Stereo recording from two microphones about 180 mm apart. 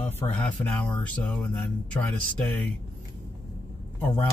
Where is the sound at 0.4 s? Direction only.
10° left (ahead or behind).